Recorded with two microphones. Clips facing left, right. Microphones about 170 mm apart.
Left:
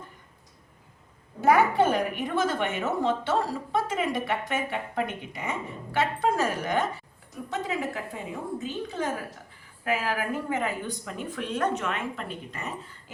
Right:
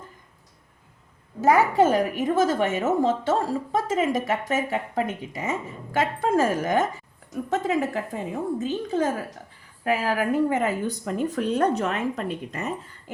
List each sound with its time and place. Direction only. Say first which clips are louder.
1.4 s a woman's voice: right 2 dB; 40° right (ahead or behind)